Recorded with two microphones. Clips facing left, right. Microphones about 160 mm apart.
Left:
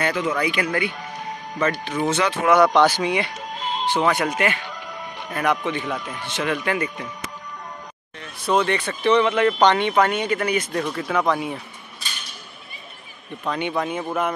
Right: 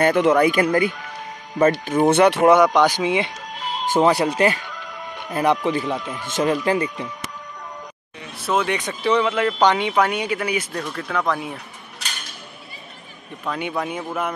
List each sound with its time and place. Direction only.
0.0 s speech: 60° right (ahead or behind)
0.4 s speech: 45° right (ahead or behind)
1.9 s speech: 55° right (ahead or behind)
2.5 s speech: 15° right (ahead or behind)
4.0 s a man's voice: 30° right (ahead or behind)
6.2 s speech: 40° right (ahead or behind)
8.2 s speech: 10° right (ahead or behind)
10.7 s speech: 5° left (ahead or behind)
13.4 s speech: 5° right (ahead or behind)